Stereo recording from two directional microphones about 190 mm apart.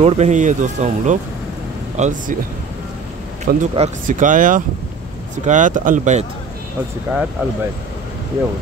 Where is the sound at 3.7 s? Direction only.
45° right (ahead or behind).